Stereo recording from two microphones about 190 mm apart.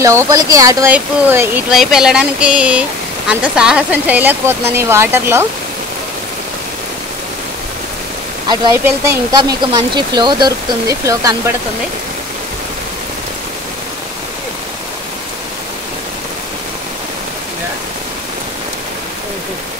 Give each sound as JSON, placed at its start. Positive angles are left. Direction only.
{"t": 0.0, "sound": "speech", "side_deg": -15}
{"t": 9.3, "sound": "speech", "side_deg": -20}